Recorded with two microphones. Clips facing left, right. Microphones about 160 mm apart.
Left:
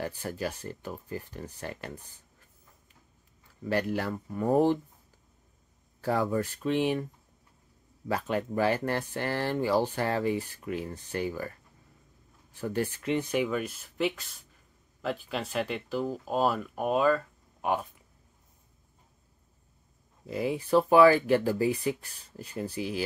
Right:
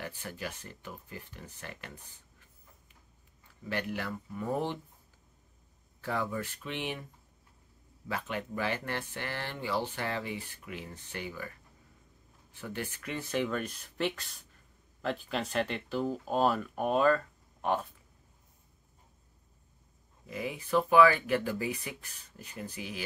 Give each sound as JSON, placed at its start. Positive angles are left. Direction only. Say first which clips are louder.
{"t": 0.0, "sound": "speech", "louder": "left 7 dB", "side_deg": 40}
{"t": 3.6, "sound": "speech", "louder": "left 6 dB", "side_deg": 40}
{"t": 5.9, "sound": "speech", "louder": "left 6 dB", "side_deg": 40}
{"t": 8.1, "sound": "speech", "louder": "left 6 dB", "side_deg": 40}
{"t": 12.5, "sound": "speech", "louder": "left 8 dB", "side_deg": 40}
{"t": 20.2, "sound": "speech", "louder": "left 7 dB", "side_deg": 35}